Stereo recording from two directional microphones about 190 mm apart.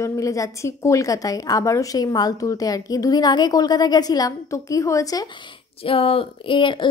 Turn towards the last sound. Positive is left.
turn(degrees=25)  # may be behind; listen again after turning